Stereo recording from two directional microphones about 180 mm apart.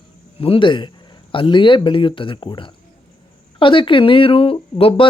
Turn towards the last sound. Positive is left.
turn(degrees=30)  # may be behind; listen again after turning